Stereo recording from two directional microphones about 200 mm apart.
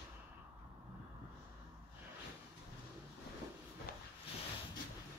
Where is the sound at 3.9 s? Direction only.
50° left (ahead or behind).